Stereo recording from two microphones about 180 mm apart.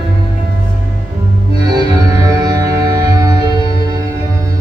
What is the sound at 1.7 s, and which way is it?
Music, 20° right (ahead or behind).